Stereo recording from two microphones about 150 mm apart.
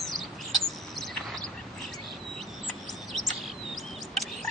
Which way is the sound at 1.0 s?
Centre (ahead or behind).